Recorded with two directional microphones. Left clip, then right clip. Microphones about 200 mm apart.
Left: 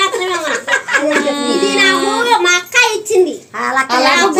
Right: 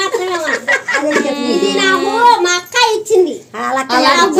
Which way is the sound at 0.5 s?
50° right (ahead or behind).